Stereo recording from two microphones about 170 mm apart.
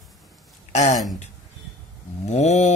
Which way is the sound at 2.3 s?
40° left (ahead or behind).